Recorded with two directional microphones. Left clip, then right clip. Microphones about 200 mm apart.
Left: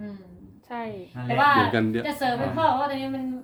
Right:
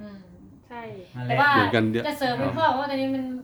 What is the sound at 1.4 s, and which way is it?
A woman's voice, 15° right (ahead or behind).